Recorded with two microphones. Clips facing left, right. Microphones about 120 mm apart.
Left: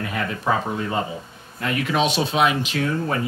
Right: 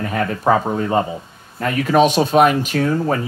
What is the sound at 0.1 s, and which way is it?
Speech, 45° right (ahead or behind).